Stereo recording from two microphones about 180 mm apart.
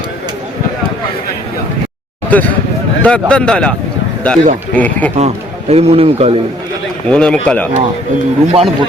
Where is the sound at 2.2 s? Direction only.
10° left (ahead or behind).